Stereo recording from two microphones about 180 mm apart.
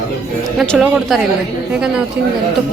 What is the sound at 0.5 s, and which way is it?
Speech, centre (ahead or behind).